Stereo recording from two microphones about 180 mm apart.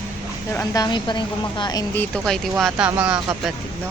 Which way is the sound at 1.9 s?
10° left (ahead or behind).